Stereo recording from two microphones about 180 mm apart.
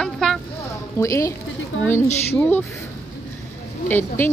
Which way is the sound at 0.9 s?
15° left (ahead or behind).